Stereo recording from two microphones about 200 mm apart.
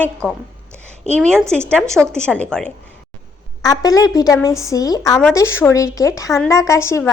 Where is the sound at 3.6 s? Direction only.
20° left (ahead or behind).